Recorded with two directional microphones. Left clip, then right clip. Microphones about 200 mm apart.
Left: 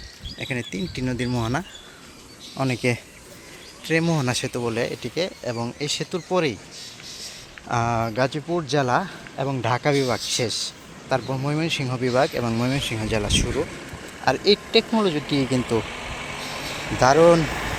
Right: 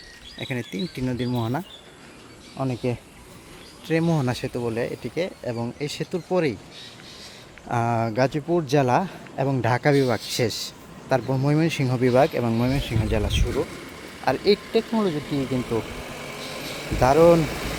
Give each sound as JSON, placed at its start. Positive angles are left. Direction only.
{"t": 0.3, "sound": "speech", "side_deg": 0}
{"t": 2.6, "sound": "speech", "side_deg": 5}
{"t": 3.8, "sound": "speech", "side_deg": -5}
{"t": 7.7, "sound": "a man's voice", "side_deg": -10}
{"t": 11.2, "sound": "speech", "side_deg": -10}
{"t": 11.4, "sound": "a man's voice", "side_deg": -30}
{"t": 12.4, "sound": "speech", "side_deg": -5}
{"t": 13.7, "sound": "speech", "side_deg": -60}
{"t": 14.3, "sound": "speech", "side_deg": 0}
{"t": 14.7, "sound": "speech", "side_deg": 15}
{"t": 15.4, "sound": "a sound", "side_deg": -60}
{"t": 17.0, "sound": "speech", "side_deg": -5}
{"t": 17.4, "sound": "a sound", "side_deg": -60}